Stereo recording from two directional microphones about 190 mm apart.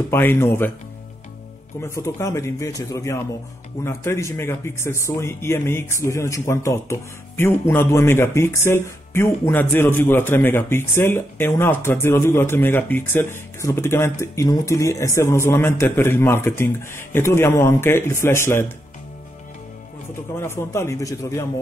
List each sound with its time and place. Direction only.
0.1 s speech: 10° left (ahead or behind)
1.8 s speech: 15° left (ahead or behind)
20.3 s speech: 15° left (ahead or behind)